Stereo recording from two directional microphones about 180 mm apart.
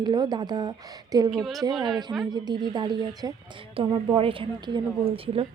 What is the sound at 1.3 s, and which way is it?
Speech, centre (ahead or behind).